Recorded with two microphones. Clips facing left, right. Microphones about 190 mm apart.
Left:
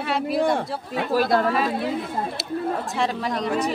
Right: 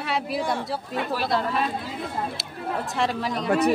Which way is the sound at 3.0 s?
Centre (ahead or behind).